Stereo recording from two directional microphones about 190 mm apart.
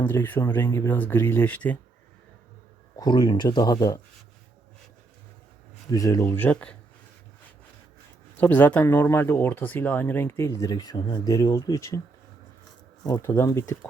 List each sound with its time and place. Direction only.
0.0 s speech: 10° left (ahead or behind)
3.0 s speech: 20° left (ahead or behind)
5.9 s speech: 20° left (ahead or behind)
8.4 s speech: 10° left (ahead or behind)
13.1 s speech: 15° left (ahead or behind)